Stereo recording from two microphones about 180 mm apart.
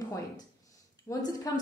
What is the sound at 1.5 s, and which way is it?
Speech, 20° left (ahead or behind).